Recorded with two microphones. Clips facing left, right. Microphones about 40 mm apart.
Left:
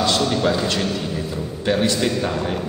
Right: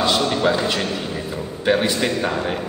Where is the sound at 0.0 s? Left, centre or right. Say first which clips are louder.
Right 1 dB; centre.